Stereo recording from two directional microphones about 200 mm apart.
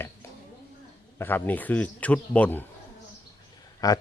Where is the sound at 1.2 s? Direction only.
10° left (ahead or behind).